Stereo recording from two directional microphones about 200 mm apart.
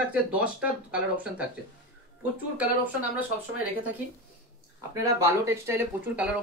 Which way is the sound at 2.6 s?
5° right (ahead or behind).